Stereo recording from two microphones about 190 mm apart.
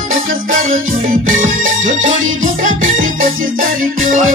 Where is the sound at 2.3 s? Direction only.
40° right (ahead or behind).